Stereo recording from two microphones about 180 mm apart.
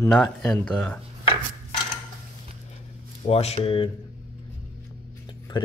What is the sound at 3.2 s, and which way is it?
Speech, 35° left (ahead or behind).